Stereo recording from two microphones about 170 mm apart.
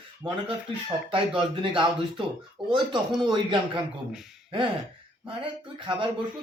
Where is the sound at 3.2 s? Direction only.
30° right (ahead or behind).